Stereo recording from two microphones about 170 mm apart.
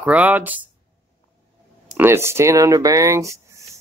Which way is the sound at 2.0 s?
15° right (ahead or behind).